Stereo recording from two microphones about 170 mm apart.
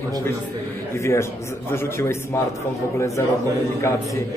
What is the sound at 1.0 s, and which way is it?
A man's voice, 15° left (ahead or behind).